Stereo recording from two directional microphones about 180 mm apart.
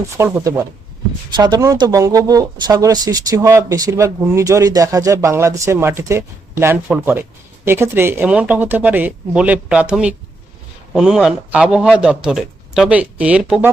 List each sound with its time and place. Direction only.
0.2 s speech: 15° right (ahead or behind)